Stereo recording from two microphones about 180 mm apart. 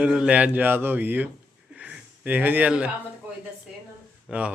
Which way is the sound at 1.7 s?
5° right (ahead or behind).